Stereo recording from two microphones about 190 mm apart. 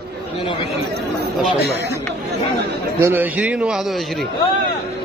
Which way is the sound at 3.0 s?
10° right (ahead or behind).